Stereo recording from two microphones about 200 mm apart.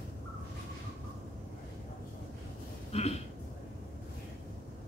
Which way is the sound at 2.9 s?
30° left (ahead or behind).